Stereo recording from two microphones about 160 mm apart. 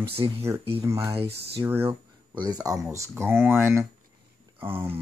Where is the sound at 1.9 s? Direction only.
30° right (ahead or behind).